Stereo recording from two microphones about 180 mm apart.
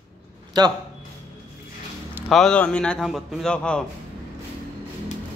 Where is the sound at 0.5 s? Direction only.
25° right (ahead or behind).